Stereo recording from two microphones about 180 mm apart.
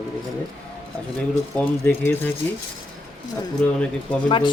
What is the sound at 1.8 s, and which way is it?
Speech, 10° left (ahead or behind).